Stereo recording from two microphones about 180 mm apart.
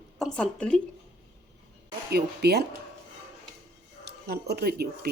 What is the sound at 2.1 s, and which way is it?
Speech, 60° right (ahead or behind).